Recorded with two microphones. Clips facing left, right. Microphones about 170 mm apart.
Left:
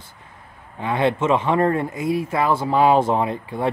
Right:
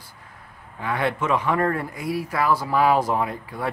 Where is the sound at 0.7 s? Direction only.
25° left (ahead or behind).